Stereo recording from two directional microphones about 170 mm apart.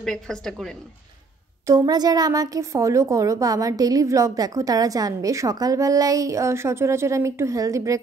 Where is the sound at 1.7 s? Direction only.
20° right (ahead or behind).